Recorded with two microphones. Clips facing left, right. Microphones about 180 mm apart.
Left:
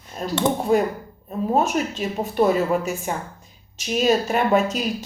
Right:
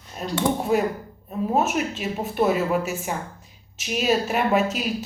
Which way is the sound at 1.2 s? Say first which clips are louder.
Left 2 dB; 5° right (ahead or behind).